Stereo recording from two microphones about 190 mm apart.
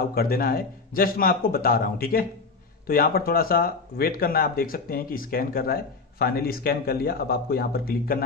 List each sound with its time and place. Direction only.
0.1 s speech: 50° left (ahead or behind)